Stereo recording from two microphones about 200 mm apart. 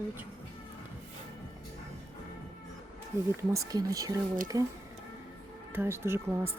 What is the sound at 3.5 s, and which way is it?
Speech, 15° right (ahead or behind).